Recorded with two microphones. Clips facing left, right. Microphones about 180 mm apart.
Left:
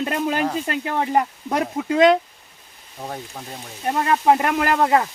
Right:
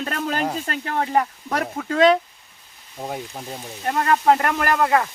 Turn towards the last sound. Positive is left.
turn(degrees=25)  # may be behind; listen again after turning